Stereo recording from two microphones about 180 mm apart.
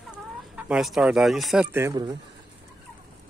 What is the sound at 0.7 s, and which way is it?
Speech, centre (ahead or behind).